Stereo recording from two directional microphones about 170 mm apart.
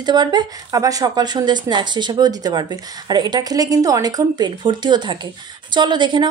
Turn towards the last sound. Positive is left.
turn(degrees=-25)  # may be behind; listen again after turning